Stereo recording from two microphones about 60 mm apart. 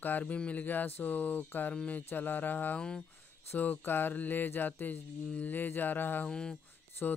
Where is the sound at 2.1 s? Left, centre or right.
Left.